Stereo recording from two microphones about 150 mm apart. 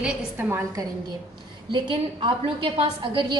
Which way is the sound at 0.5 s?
20° right (ahead or behind).